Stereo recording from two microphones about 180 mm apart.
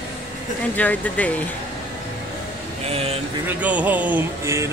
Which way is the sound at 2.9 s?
30° right (ahead or behind).